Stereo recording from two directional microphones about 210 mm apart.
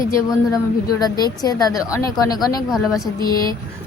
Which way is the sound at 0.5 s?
15° left (ahead or behind).